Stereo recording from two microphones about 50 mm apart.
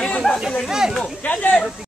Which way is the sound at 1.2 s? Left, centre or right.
Left.